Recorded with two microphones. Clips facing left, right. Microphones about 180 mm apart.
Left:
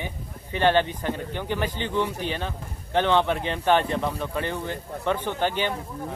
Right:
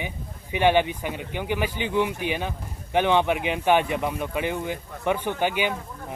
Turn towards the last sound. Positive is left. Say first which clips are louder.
# right 1 dB
turn(degrees=-10)  # may be behind; listen again after turning